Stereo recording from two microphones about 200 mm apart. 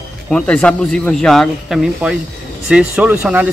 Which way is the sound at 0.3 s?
5° left (ahead or behind).